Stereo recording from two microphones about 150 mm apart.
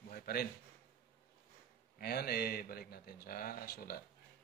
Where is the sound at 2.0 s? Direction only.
90° left.